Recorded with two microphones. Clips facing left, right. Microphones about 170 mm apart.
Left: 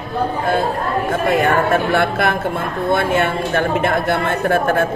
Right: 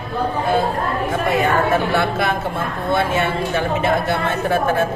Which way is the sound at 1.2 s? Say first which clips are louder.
Left 2 dB; 50° left (ahead or behind).